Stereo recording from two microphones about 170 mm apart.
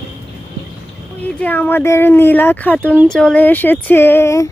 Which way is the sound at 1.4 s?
10° left (ahead or behind).